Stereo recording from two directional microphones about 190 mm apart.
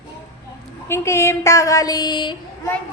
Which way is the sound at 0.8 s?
15° left (ahead or behind).